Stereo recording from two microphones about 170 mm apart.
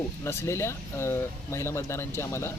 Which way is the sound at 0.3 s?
15° left (ahead or behind).